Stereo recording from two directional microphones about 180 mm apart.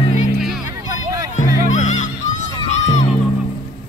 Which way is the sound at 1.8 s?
45° left (ahead or behind).